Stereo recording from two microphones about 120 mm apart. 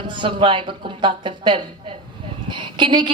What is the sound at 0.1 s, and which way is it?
A woman's voice, 45° right (ahead or behind).